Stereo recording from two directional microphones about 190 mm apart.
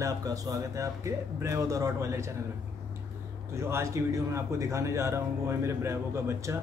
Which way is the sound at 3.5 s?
15° right (ahead or behind).